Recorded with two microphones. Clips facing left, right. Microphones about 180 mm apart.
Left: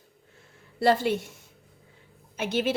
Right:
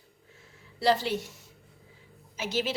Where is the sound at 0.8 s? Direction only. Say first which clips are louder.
Left 3 dB; 50° left (ahead or behind).